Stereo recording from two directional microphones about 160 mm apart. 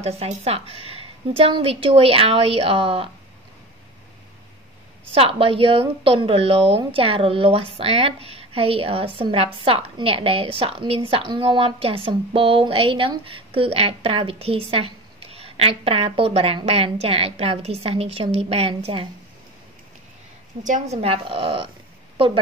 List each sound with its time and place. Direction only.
0.0 s a woman's voice: 40° right (ahead or behind)
5.1 s a woman's voice: 35° right (ahead or behind)
20.6 s a woman's voice: 45° right (ahead or behind)
22.1 s a sound: 35° right (ahead or behind)